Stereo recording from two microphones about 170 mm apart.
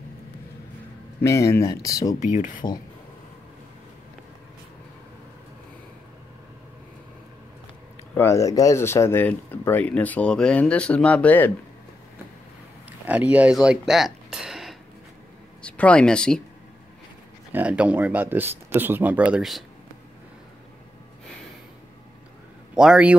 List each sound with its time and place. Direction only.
1.2 s speech: 15° left (ahead or behind)
2.1 s speech: 45° left (ahead or behind)
8.1 s speech: 15° left (ahead or behind)
13.0 s speech: 10° right (ahead or behind)
17.5 s speech: 10° right (ahead or behind)
22.8 s a man's voice: 5° right (ahead or behind)